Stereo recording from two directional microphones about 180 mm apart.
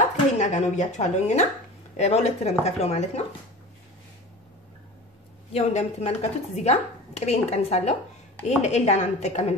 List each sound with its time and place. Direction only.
0.4 s a woman's voice: 40° left (ahead or behind)
5.5 s a woman's voice: 40° left (ahead or behind)